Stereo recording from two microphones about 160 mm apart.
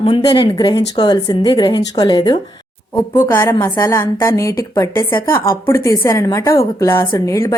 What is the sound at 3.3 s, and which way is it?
A woman's voice, 15° left (ahead or behind).